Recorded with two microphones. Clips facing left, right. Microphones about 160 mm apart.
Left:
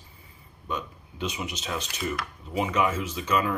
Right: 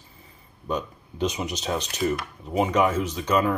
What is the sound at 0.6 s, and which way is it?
Speech, 40° right (ahead or behind).